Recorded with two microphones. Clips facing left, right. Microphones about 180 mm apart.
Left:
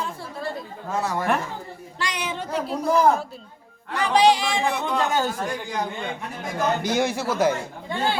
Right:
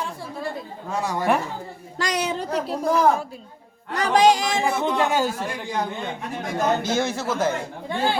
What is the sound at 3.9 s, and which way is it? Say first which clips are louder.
Speech: right 1 dB; 45° right (ahead or behind).